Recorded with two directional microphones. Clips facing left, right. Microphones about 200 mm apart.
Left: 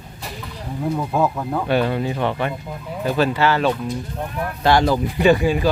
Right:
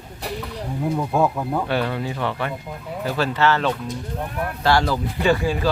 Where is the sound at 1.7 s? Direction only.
20° left (ahead or behind).